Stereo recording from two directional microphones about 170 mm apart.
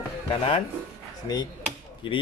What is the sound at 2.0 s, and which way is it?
Speech, 30° left (ahead or behind).